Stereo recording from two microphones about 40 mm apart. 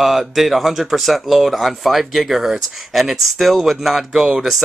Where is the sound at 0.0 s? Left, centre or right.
Centre.